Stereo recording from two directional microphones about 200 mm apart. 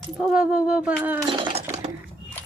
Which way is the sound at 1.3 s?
25° right (ahead or behind).